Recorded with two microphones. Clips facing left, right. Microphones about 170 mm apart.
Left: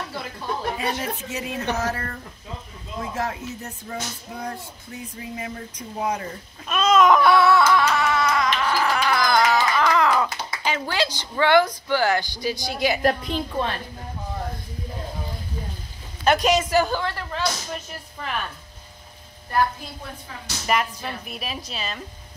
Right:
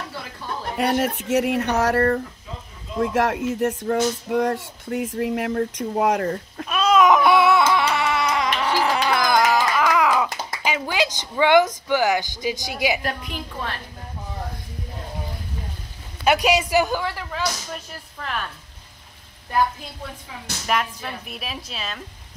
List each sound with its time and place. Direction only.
0.7 s speech: 70° right (ahead or behind)
3.0 s speech: 80° right
3.8 s speech: 80° right
6.7 s a sound: 5° right (ahead or behind)
7.2 s crying: 10° right (ahead or behind)
7.7 s music: 10° right (ahead or behind)
11.9 s speech: 15° right (ahead or behind)
13.0 s a woman's voice: 35° left (ahead or behind)
16.3 s speech: 10° right (ahead or behind)
20.6 s speech: centre (ahead or behind)